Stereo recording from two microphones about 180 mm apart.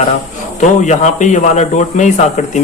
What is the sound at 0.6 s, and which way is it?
Speech, 40° left (ahead or behind).